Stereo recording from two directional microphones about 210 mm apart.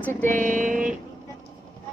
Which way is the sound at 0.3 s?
35° right (ahead or behind).